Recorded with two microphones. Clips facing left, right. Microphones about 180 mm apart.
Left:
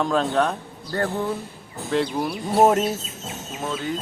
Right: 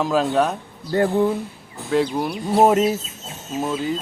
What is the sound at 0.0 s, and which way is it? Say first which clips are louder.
Speech: right 2 dB; 5° right (ahead or behind).